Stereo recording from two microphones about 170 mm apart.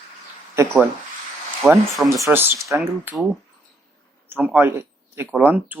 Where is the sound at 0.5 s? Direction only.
15° right (ahead or behind).